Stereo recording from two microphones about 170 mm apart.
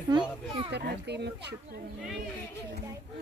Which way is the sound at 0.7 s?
75° right (ahead or behind).